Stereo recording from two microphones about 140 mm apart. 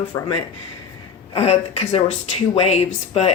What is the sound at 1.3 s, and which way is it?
Speech, 45° left (ahead or behind).